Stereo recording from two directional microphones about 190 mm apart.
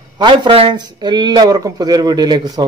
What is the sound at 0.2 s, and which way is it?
A man's voice, 25° right (ahead or behind).